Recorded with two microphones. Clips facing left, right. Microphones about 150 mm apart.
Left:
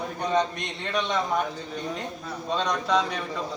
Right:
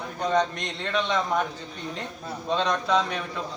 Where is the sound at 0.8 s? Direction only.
5° left (ahead or behind).